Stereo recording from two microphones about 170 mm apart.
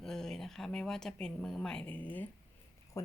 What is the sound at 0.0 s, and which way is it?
Speech, 5° left (ahead or behind).